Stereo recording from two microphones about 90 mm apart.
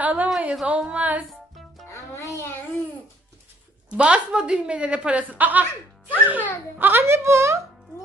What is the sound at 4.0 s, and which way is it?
A woman's voice, 10° right (ahead or behind).